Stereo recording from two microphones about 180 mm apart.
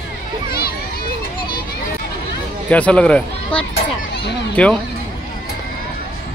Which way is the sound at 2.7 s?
5° left (ahead or behind).